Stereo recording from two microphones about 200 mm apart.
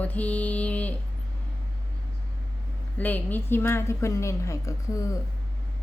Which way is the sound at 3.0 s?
10° left (ahead or behind).